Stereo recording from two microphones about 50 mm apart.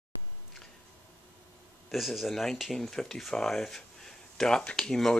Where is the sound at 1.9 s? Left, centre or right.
Centre.